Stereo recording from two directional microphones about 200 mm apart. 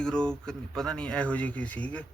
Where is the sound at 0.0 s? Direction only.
5° left (ahead or behind).